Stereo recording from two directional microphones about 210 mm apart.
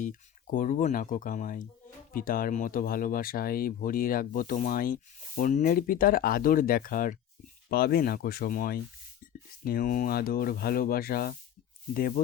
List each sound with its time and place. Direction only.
0.0 s speech: 40° left (ahead or behind)